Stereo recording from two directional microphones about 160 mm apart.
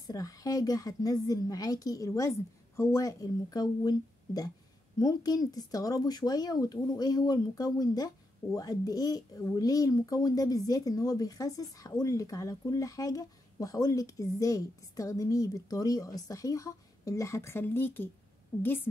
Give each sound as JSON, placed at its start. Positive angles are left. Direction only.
{"t": 0.0, "sound": "speech", "side_deg": 20}